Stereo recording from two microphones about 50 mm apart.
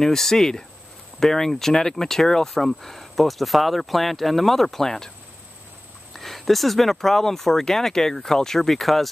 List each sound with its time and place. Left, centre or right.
0.0 s speech: centre
6.1 s speech: centre